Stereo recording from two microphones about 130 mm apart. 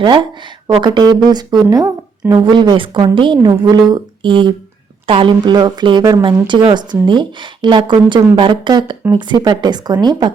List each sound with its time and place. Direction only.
0.0 s speech: 35° right (ahead or behind)